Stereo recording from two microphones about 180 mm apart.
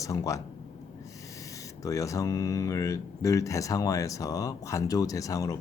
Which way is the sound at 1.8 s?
20° left (ahead or behind).